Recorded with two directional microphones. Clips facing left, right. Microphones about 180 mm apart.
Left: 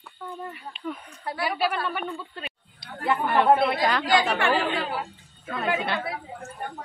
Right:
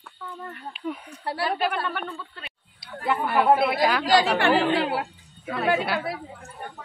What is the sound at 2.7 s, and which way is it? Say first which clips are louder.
Speech: even; 5° right (ahead or behind).